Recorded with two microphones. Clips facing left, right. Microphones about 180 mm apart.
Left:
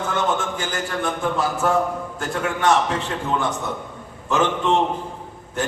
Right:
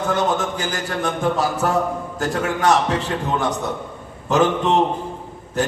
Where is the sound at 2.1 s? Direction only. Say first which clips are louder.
Right 5 dB; 40° right (ahead or behind).